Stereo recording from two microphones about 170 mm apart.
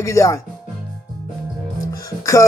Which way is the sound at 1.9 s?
20° left (ahead or behind).